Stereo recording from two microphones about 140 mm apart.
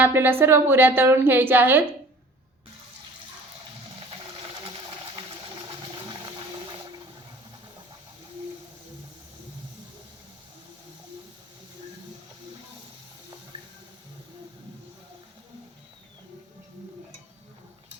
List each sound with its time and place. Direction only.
0.0 s a woman's voice: 15° right (ahead or behind)